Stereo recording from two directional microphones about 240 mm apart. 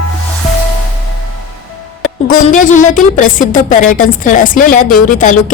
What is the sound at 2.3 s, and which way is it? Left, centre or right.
A woman's voice, left.